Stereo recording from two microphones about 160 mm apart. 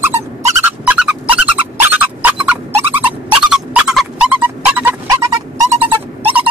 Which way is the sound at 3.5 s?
5° right (ahead or behind).